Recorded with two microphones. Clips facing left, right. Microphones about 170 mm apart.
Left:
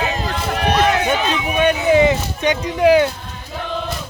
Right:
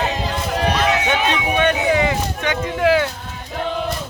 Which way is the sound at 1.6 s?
15° left (ahead or behind).